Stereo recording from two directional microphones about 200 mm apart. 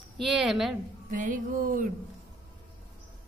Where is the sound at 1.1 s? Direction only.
40° right (ahead or behind).